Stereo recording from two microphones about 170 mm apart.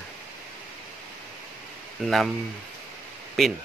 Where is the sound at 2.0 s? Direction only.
Centre (ahead or behind).